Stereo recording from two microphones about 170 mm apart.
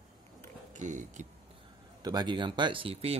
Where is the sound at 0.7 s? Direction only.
45° right (ahead or behind).